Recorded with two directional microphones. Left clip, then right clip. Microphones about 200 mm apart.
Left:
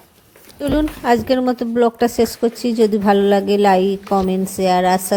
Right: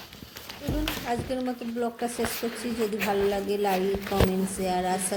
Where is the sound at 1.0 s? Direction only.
45° left (ahead or behind).